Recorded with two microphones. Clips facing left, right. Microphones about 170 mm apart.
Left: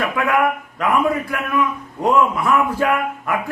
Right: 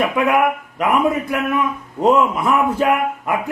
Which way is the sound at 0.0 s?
20° right (ahead or behind).